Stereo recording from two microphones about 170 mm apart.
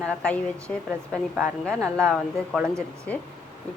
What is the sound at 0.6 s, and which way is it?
A woman's voice, 5° left (ahead or behind).